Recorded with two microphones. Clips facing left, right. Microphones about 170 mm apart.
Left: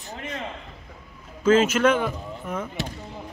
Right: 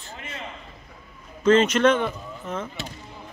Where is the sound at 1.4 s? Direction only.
5° left (ahead or behind).